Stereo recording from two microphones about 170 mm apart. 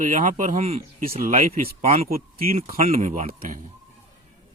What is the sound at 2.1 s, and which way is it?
Speech, 60° right (ahead or behind).